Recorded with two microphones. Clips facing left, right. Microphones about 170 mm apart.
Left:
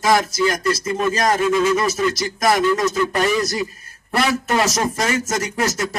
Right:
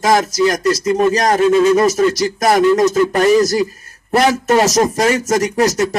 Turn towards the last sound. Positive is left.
turn(degrees=-35)  # may be behind; listen again after turning